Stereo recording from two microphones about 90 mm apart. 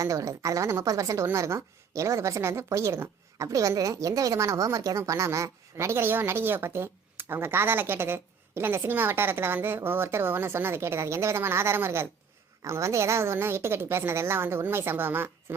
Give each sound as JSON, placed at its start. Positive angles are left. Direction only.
{"t": 0.0, "sound": "a woman's voice", "side_deg": -40}